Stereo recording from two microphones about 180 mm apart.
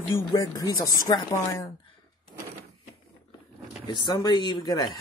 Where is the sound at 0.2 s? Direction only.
25° left (ahead or behind).